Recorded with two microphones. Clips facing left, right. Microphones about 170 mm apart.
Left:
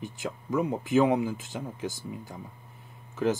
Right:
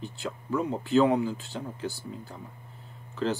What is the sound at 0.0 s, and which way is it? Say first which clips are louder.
Speech: left 1 dB; 15° left (ahead or behind).